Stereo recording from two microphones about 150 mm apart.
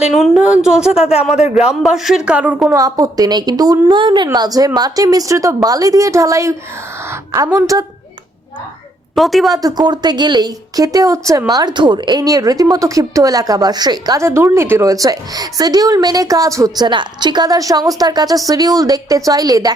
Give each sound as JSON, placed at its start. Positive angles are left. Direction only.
{"t": 0.0, "sound": "speech", "side_deg": 0}
{"t": 2.7, "sound": "speech", "side_deg": -25}
{"t": 9.1, "sound": "speech", "side_deg": 0}
{"t": 9.5, "sound": "speech", "side_deg": -25}